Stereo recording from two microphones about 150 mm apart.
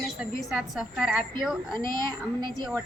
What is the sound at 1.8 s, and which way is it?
Speech, 65° left (ahead or behind).